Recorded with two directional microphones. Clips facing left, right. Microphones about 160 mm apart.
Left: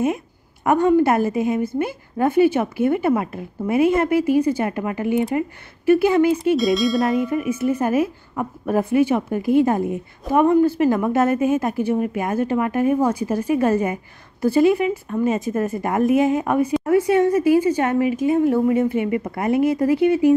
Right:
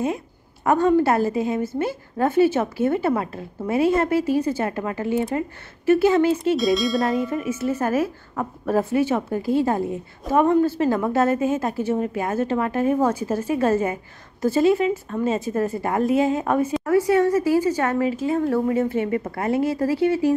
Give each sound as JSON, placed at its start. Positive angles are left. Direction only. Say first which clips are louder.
{"t": 0.7, "sound": "a woman's voice", "louder": "left 2 dB", "side_deg": 15}
{"t": 6.5, "sound": "tubular bells", "louder": "left 2 dB", "side_deg": 0}
{"t": 7.4, "sound": "a woman's voice", "louder": "left 3 dB", "side_deg": 15}